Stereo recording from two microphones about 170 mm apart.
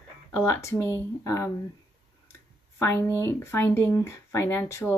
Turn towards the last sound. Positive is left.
turn(degrees=15)  # may be behind; listen again after turning